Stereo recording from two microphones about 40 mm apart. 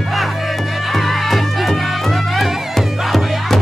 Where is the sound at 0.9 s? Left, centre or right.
Centre.